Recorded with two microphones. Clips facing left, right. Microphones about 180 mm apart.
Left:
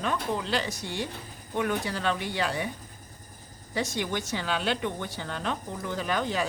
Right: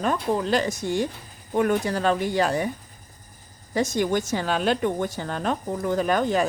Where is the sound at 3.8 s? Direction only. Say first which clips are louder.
Right 7 dB; 45° right (ahead or behind).